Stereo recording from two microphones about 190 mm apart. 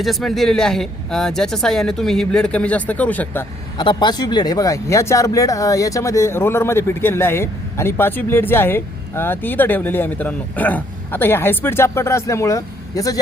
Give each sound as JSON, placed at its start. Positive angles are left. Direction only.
{"t": 0.0, "sound": "speech", "side_deg": 0}
{"t": 3.8, "sound": "speech", "side_deg": 25}